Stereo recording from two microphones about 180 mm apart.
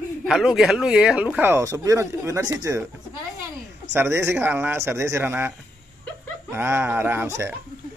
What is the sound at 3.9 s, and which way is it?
Speech, 15° right (ahead or behind).